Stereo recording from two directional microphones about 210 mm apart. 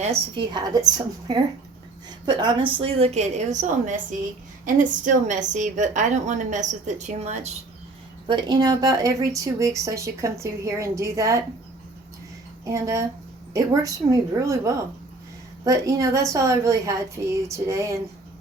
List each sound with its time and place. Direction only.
0.0 s a woman's voice: 25° right (ahead or behind)
8.3 s speech: 20° right (ahead or behind)
12.6 s speech: 15° right (ahead or behind)